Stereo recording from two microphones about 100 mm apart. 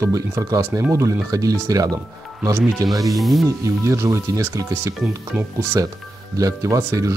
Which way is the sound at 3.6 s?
30° right (ahead or behind).